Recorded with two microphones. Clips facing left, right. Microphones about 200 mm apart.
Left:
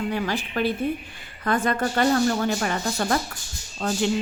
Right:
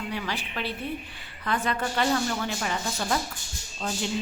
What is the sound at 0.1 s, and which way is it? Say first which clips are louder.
A woman's voice: left 6 dB; 45° left (ahead or behind).